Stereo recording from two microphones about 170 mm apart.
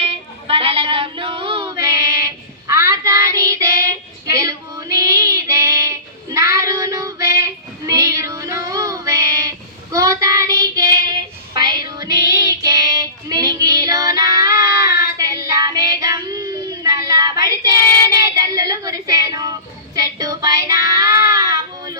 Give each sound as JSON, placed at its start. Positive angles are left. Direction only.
{"t": 0.0, "sound": "female singing", "side_deg": -35}
{"t": 1.8, "sound": "child singing", "side_deg": -20}